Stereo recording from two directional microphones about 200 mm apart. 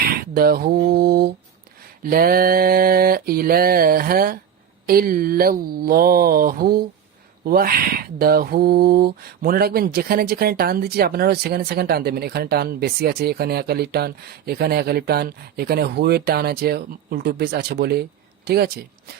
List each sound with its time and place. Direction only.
0.2 s mantra: 50° right (ahead or behind)
2.0 s speech: 45° right (ahead or behind)